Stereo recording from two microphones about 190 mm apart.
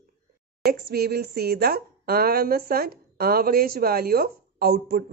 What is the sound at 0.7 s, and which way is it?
Speech, 60° right (ahead or behind).